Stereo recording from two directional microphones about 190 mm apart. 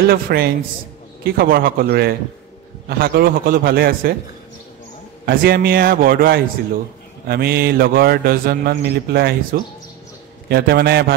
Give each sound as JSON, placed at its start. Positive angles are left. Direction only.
{"t": 0.1, "sound": "a man's voice", "side_deg": -55}
{"t": 5.2, "sound": "a man's voice", "side_deg": -50}